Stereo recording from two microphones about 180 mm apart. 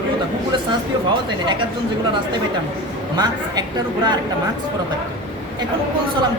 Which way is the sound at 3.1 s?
25° right (ahead or behind).